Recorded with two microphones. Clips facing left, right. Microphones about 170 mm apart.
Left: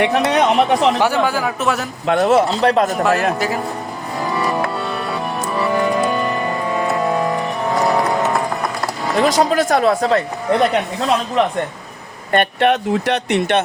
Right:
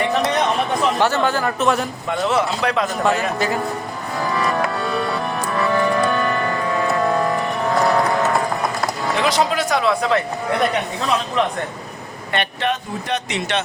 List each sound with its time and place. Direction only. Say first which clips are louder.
0.0 s speech: left 4 dB; 70° left (ahead or behind)
1.0 s a man's voice: left 1 dB; 10° left (ahead or behind)
2.0 s speech: left 8 dB; 60° left (ahead or behind)
2.3 s speech: left 5 dB; 40° left (ahead or behind)
3.0 s a man's voice: left 3 dB; 5° left (ahead or behind)
5.5 s music: left 1 dB; 15° left (ahead or behind)
9.1 s speech: left 5 dB; 45° left (ahead or behind)
12.3 s speech: left 7 dB; 55° left (ahead or behind)